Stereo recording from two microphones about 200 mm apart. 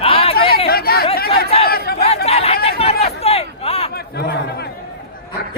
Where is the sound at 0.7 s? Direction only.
50° left (ahead or behind).